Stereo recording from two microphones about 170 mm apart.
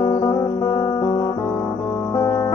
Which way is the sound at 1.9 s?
15° left (ahead or behind).